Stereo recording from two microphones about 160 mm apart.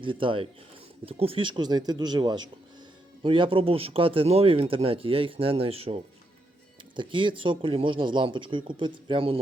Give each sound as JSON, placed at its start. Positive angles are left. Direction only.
{"t": 0.0, "sound": "speech", "side_deg": -30}